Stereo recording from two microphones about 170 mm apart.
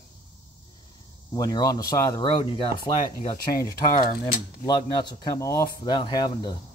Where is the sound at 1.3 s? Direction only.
20° left (ahead or behind).